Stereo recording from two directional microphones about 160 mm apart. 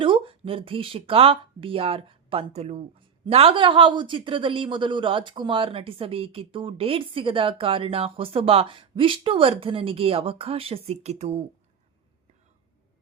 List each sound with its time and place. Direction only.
0.0 s a woman's voice: 35° right (ahead or behind)